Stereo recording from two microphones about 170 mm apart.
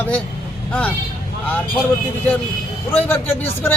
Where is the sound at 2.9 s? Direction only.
15° left (ahead or behind).